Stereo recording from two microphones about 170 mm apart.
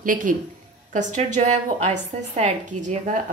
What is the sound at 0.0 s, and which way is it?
A woman's voice, 50° right (ahead or behind).